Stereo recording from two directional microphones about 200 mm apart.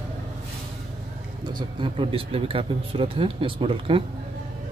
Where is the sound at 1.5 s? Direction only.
25° right (ahead or behind).